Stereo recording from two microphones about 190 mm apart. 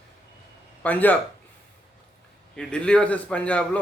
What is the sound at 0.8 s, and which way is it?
Speech, 10° left (ahead or behind).